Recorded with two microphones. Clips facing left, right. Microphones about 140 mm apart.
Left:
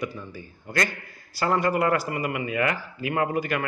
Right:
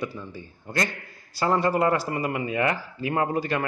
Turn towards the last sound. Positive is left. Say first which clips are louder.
# even
turn(degrees=-25)  # may be behind; listen again after turning